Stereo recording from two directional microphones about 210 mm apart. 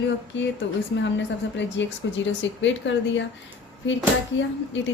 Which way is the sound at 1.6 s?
60° left (ahead or behind).